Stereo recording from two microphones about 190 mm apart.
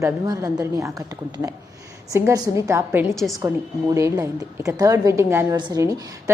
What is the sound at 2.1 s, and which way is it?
A woman's voice, 15° right (ahead or behind).